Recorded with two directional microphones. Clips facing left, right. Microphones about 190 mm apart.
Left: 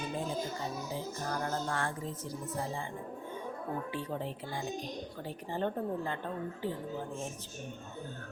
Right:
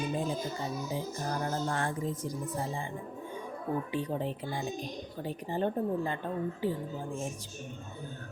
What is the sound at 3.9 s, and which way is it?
A woman's voice, 15° right (ahead or behind).